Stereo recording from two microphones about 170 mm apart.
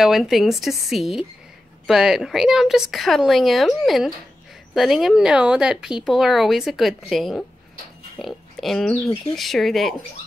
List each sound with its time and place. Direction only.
0.0 s speech: centre (ahead or behind)